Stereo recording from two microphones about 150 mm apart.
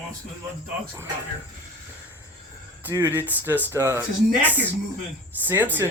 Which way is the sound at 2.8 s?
15° right (ahead or behind).